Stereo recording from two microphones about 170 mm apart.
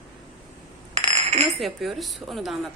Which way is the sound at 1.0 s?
40° right (ahead or behind).